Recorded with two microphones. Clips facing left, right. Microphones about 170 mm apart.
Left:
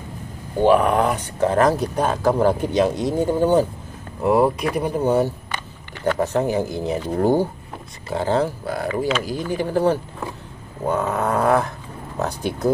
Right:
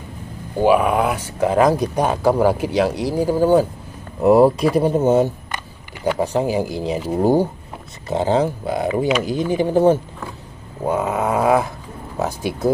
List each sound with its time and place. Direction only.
0.6 s speech: 5° right (ahead or behind)
4.2 s speech: 25° right (ahead or behind)
8.8 s speech: 5° right (ahead or behind)
9.5 s speech: 20° right (ahead or behind)